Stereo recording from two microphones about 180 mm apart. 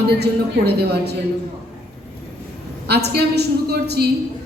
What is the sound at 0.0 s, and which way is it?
A woman's voice, 65° right (ahead or behind).